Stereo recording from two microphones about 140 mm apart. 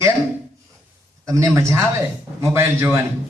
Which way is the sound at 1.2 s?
25° right (ahead or behind).